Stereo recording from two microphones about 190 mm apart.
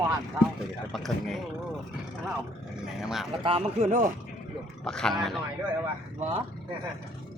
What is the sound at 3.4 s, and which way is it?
Speech, 30° right (ahead or behind).